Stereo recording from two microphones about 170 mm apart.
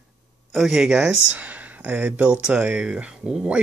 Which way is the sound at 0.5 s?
Centre (ahead or behind).